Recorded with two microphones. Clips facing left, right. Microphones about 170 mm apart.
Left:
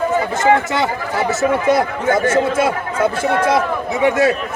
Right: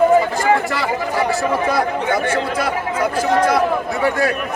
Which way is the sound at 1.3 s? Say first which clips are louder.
Left 3 dB; 20° left (ahead or behind).